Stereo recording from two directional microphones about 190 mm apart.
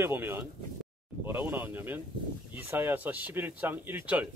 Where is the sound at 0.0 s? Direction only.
10° right (ahead or behind).